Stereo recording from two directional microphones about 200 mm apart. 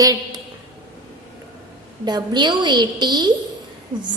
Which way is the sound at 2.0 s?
20° right (ahead or behind).